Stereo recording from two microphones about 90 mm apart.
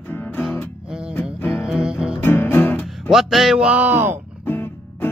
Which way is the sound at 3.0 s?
5° right (ahead or behind).